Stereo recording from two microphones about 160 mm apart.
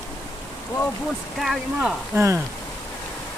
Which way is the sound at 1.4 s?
Centre (ahead or behind).